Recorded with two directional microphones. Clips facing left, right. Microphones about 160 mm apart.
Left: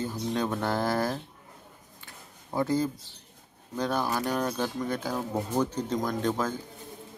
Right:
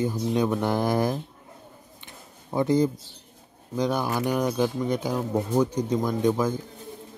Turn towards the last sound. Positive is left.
turn(degrees=-15)  # may be behind; listen again after turning